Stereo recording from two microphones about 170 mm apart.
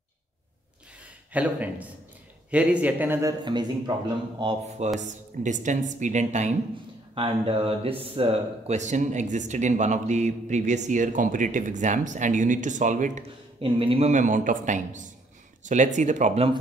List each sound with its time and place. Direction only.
1.3 s a man's voice: 10° right (ahead or behind); by 3.9 s 25° right (ahead or behind)
4.6 s speech: 40° right (ahead or behind)
7.2 s speech: 35° right (ahead or behind)
13.6 s speech: 30° right (ahead or behind)